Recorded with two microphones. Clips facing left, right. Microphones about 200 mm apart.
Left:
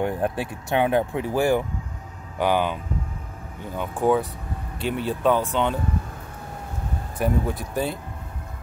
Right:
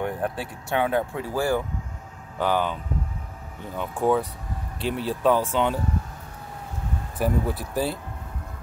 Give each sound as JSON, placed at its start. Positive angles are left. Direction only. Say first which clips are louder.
{"t": 0.0, "sound": "speech", "louder": "left 3 dB", "side_deg": 25}
{"t": 3.7, "sound": "speech", "louder": "left 1 dB", "side_deg": 0}
{"t": 7.2, "sound": "speech", "louder": "left 1 dB", "side_deg": 0}